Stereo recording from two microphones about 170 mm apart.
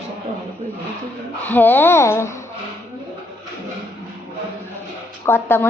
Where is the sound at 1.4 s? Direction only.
10° left (ahead or behind).